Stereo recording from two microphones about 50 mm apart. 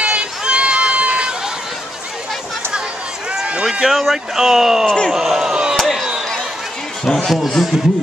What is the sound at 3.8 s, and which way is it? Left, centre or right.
Speech, centre.